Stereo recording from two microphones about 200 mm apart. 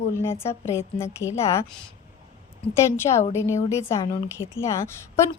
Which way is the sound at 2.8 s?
15° left (ahead or behind).